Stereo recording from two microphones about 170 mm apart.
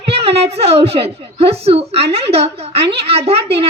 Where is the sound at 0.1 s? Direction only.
35° right (ahead or behind).